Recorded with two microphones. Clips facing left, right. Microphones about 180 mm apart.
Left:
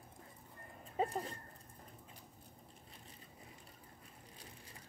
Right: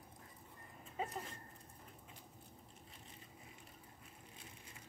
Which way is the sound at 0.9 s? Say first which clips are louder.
Left 7 dB; 35° left (ahead or behind).